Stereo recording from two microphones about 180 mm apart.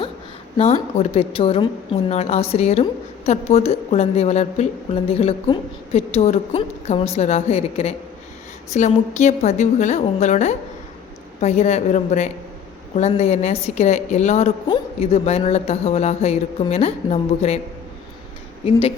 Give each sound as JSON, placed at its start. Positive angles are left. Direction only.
{"t": 0.5, "sound": "a woman's voice", "side_deg": 35}
{"t": 18.6, "sound": "a woman's voice", "side_deg": 30}